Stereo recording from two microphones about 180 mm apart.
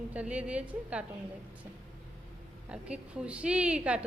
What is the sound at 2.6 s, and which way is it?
A woman's voice, 5° right (ahead or behind).